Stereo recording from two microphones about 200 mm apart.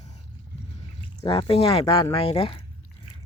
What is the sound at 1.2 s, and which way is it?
Speech, 25° left (ahead or behind).